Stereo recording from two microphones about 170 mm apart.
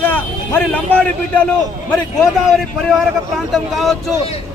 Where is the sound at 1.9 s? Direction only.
Centre (ahead or behind).